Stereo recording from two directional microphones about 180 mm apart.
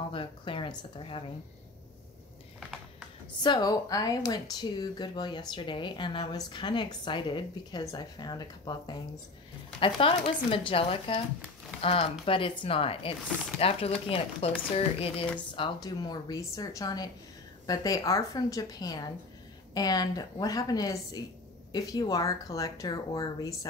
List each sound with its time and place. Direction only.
0.1 s speech: 30° left (ahead or behind)
3.4 s speech: 20° left (ahead or behind)
15.5 s speech: 25° left (ahead or behind)